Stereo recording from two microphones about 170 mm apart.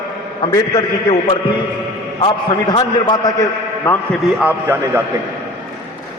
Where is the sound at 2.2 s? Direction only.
30° left (ahead or behind).